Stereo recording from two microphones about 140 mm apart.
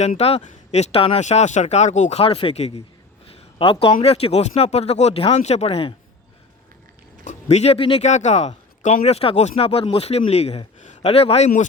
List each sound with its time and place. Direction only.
0.0 s speech: 50° left (ahead or behind)
3.3 s a sound: 40° left (ahead or behind)
4.0 s speech: 45° left (ahead or behind)
7.3 s speech: 50° left (ahead or behind)
8.0 s speech: 55° left (ahead or behind)